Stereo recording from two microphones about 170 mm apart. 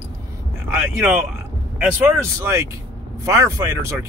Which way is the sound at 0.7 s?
10° right (ahead or behind).